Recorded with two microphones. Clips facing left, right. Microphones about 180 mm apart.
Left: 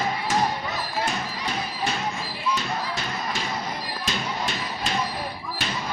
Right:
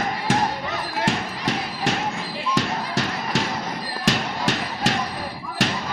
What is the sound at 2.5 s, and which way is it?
Music, 90° right.